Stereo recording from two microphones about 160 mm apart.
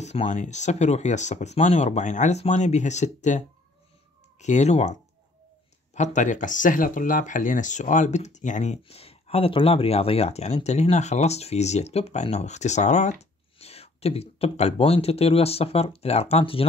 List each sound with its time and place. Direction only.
0.0 s speech: 45° left (ahead or behind)
5.9 s speech: 50° left (ahead or behind)